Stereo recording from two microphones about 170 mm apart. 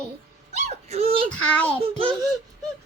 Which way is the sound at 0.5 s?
40° right (ahead or behind).